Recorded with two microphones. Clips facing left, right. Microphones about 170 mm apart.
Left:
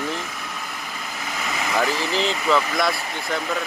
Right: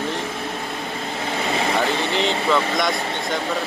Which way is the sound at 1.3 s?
30° right (ahead or behind).